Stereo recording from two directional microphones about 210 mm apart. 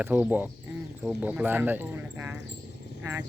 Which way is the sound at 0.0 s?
10° right (ahead or behind).